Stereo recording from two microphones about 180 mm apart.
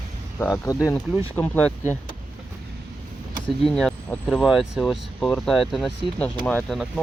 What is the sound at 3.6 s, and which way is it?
Speech, 5° left (ahead or behind).